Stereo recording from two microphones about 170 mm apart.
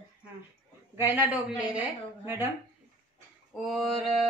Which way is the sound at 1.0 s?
10° right (ahead or behind).